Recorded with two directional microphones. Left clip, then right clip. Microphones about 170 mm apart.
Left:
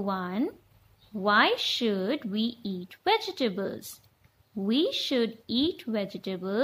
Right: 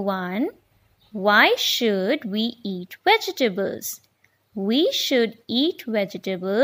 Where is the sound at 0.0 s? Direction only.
30° right (ahead or behind).